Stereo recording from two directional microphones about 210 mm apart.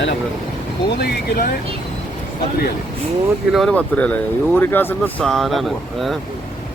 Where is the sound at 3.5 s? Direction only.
5° left (ahead or behind).